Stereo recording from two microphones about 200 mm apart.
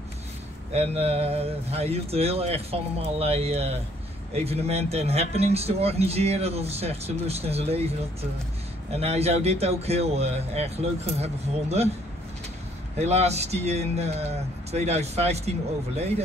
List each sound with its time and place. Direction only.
0.7 s speech: 30° right (ahead or behind)
13.0 s speech: 35° right (ahead or behind)